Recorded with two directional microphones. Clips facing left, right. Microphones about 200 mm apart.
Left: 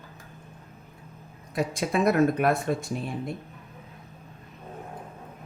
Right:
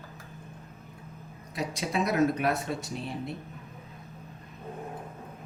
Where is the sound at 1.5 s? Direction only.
50° left (ahead or behind).